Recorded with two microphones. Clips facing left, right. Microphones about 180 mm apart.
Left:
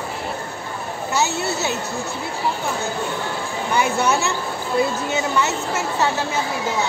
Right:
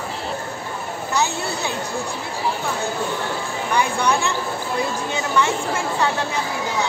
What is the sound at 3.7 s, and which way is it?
Speech, 5° left (ahead or behind).